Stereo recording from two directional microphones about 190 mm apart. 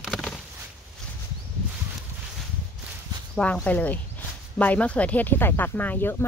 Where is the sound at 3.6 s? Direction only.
10° left (ahead or behind).